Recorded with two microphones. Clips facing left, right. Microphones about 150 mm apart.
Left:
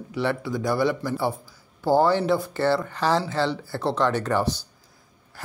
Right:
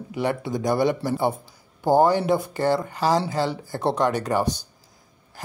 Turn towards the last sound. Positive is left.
turn(degrees=-15)  # may be behind; listen again after turning